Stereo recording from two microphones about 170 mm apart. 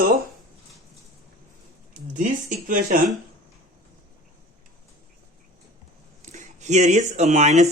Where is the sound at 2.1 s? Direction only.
50° right (ahead or behind).